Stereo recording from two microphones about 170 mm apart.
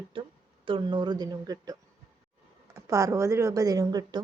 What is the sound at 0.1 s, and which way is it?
Speech, 30° right (ahead or behind).